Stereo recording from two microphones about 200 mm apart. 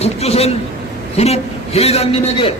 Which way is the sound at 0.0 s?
30° left (ahead or behind).